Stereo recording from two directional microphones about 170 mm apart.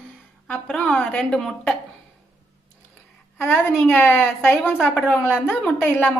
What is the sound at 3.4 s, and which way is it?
A woman's voice, 10° left (ahead or behind).